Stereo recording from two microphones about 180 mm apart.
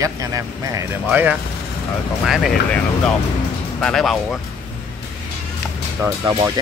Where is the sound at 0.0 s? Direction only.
20° right (ahead or behind); by 2.8 s centre (ahead or behind).